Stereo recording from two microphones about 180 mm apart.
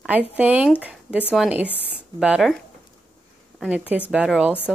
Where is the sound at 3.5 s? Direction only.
Centre (ahead or behind).